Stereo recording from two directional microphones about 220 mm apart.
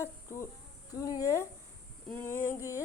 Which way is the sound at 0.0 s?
10° left (ahead or behind).